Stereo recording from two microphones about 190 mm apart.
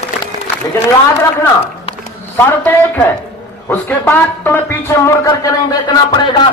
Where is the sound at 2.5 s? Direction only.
10° left (ahead or behind).